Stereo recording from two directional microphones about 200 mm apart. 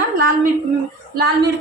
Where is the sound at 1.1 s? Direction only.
55° right (ahead or behind).